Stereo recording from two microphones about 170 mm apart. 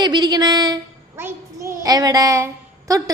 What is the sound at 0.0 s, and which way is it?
Child singing, 25° right (ahead or behind).